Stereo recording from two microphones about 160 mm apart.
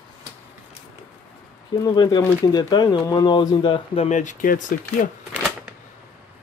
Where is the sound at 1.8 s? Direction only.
25° left (ahead or behind).